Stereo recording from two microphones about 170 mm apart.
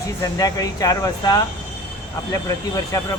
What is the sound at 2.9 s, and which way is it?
Speech, 20° left (ahead or behind).